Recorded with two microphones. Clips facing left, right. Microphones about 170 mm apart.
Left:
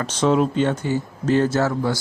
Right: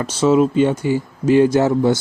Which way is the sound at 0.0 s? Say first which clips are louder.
Right 4 dB; 10° right (ahead or behind).